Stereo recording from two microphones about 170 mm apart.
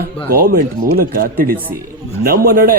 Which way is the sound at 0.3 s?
60° right (ahead or behind).